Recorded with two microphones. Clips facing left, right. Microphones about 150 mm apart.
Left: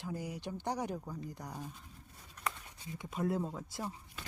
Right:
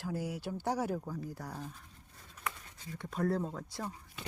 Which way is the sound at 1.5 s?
10° left (ahead or behind).